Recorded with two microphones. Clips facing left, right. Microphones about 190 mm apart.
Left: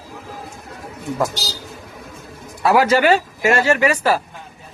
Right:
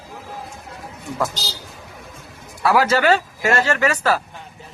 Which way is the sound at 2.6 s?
20° left (ahead or behind).